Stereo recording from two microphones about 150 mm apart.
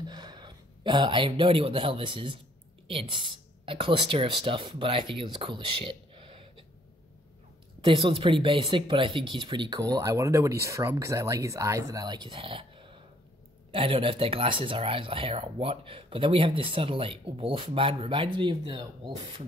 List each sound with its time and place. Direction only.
0.0 s speech: 30° right (ahead or behind)
7.8 s speech: 35° right (ahead or behind)